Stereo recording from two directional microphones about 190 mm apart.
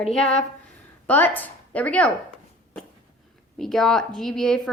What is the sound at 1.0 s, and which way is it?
Speech, 10° left (ahead or behind).